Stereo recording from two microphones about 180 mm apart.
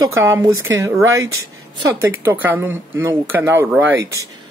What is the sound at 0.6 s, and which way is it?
Speech, 90° right.